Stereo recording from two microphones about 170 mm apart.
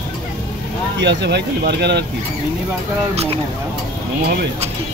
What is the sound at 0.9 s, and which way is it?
Speech, 85° right.